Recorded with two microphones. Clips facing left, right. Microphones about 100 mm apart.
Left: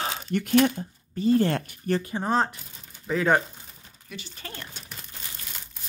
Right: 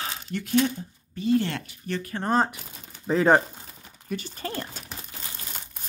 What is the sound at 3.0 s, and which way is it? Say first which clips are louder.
Speech: right 3 dB; 35° right (ahead or behind).